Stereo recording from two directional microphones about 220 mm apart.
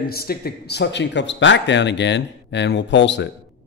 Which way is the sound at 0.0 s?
45° left (ahead or behind).